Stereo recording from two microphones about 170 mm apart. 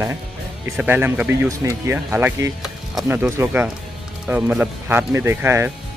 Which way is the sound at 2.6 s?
Centre (ahead or behind).